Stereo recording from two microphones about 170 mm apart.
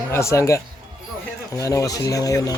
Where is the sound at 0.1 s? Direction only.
15° left (ahead or behind).